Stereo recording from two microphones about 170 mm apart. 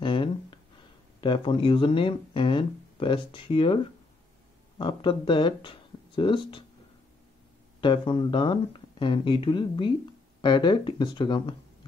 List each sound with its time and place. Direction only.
0.0 s a sound: 30° left (ahead or behind)
1.2 s speech: 30° left (ahead or behind)
7.8 s speech: 30° left (ahead or behind)